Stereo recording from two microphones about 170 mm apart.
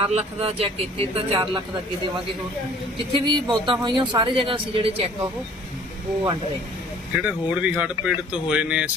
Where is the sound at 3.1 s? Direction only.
30° right (ahead or behind).